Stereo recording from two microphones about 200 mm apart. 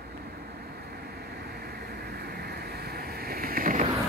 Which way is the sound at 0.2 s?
50° right (ahead or behind).